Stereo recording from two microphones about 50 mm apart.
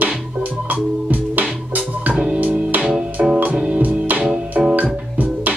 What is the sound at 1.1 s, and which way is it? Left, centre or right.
Music, right.